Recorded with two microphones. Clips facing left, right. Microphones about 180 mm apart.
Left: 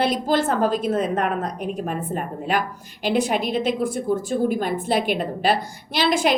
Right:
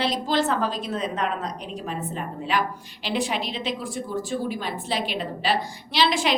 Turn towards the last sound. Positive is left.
turn(degrees=50)  # may be behind; listen again after turning